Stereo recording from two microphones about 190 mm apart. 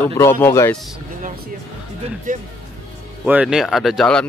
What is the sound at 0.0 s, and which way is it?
Speech, 10° left (ahead or behind).